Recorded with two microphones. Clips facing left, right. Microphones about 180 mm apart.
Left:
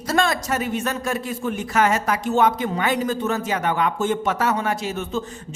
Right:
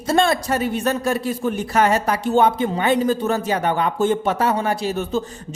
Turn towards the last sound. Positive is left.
turn(degrees=-35)  # may be behind; listen again after turning